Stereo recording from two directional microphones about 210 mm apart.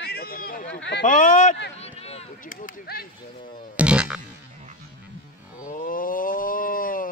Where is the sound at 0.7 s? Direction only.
55° left (ahead or behind).